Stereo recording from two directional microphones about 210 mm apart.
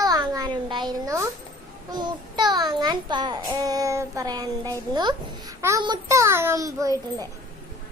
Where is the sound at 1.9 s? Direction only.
20° right (ahead or behind).